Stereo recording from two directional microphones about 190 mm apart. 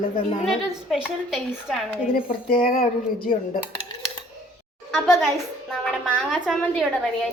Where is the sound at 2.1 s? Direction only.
50° left (ahead or behind).